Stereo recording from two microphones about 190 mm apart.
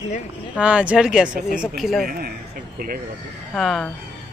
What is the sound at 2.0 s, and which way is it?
Speech, 55° right (ahead or behind).